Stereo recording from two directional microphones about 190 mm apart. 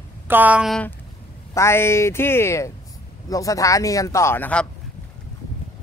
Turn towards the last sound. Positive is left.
turn(degrees=10)  # may be behind; listen again after turning